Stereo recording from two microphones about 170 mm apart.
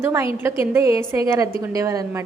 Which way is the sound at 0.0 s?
15° right (ahead or behind).